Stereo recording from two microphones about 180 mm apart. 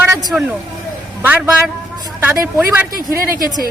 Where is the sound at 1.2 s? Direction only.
10° right (ahead or behind).